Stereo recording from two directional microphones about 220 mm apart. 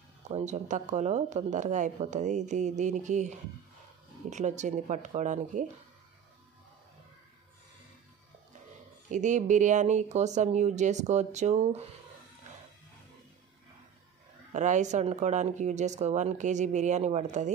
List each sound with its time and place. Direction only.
0.2 s speech: 30° right (ahead or behind)
9.1 s speech: 35° right (ahead or behind)
14.5 s speech: 35° right (ahead or behind)